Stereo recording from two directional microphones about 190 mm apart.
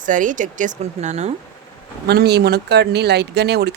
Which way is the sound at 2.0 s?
55° right (ahead or behind).